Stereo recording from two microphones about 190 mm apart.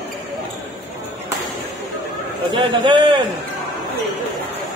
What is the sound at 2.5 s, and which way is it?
Speech, 25° right (ahead or behind).